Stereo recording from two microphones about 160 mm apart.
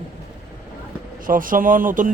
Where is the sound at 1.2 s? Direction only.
60° right (ahead or behind).